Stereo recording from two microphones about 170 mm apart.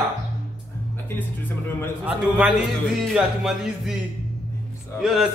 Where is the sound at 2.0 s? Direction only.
5° right (ahead or behind).